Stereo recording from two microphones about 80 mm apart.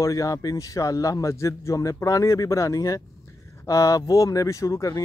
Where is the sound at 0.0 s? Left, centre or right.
Left.